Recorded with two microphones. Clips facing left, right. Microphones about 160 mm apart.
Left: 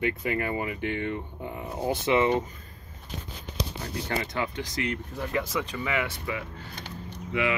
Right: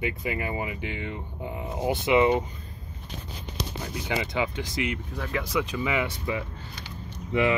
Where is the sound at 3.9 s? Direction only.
15° right (ahead or behind).